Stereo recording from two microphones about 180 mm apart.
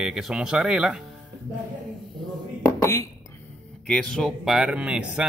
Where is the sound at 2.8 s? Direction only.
15° left (ahead or behind).